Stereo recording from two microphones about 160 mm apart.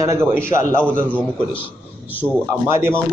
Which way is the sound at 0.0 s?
20° right (ahead or behind).